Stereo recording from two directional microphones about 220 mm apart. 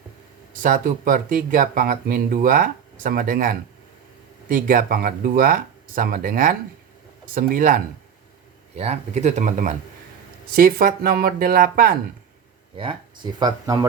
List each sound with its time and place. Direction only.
0.5 s speech: 35° right (ahead or behind)
12.7 s speech: 25° right (ahead or behind)